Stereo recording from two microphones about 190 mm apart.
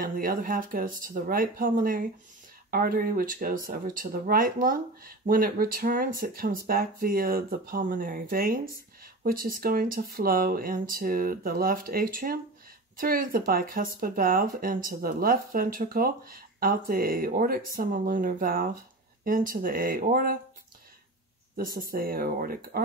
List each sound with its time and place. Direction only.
0.0 s speech: 50° right (ahead or behind)
21.5 s speech: 50° right (ahead or behind)